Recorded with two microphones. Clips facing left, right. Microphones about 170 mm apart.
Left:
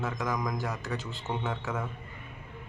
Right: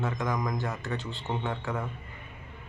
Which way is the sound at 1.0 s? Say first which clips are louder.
Right 2 dB; 40° left (ahead or behind).